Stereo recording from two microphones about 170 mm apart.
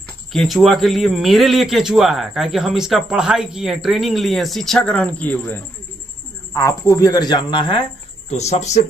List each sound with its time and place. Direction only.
0.3 s a man's voice: centre (ahead or behind); by 7.8 s 30° left (ahead or behind)
8.3 s speech: 40° left (ahead or behind)